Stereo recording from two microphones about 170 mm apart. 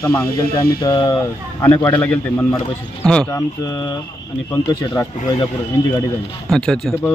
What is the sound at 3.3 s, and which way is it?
Speech, 20° left (ahead or behind).